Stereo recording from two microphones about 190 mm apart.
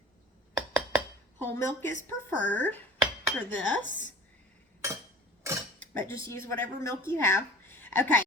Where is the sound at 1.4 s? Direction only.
15° left (ahead or behind).